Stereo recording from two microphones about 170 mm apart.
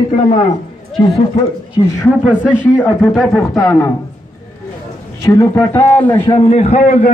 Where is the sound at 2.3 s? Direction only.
5° right (ahead or behind).